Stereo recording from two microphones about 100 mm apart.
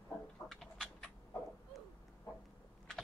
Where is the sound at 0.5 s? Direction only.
Centre (ahead or behind).